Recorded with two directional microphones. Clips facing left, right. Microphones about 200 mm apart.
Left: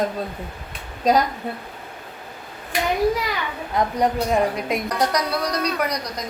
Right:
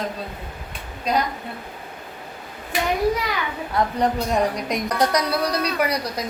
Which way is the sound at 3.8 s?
20° left (ahead or behind).